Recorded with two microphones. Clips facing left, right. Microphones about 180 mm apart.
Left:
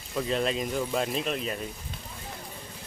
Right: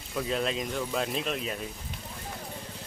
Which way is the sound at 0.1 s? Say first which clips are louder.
Left 2 dB; centre (ahead or behind).